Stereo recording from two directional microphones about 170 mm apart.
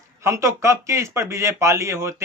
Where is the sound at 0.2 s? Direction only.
15° right (ahead or behind).